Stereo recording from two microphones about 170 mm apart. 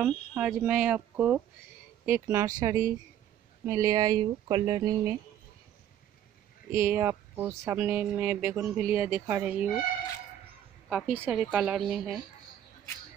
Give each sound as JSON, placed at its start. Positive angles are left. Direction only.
{"t": 0.0, "sound": "speech", "side_deg": -5}
{"t": 6.7, "sound": "speech", "side_deg": -15}
{"t": 10.9, "sound": "a woman's voice", "side_deg": -5}